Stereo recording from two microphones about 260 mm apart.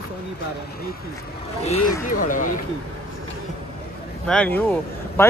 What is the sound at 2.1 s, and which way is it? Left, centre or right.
Speech, left.